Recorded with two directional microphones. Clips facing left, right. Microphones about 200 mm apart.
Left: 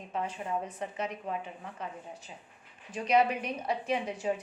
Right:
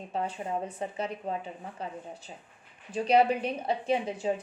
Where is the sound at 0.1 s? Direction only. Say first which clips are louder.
Right 1 dB; 35° right (ahead or behind).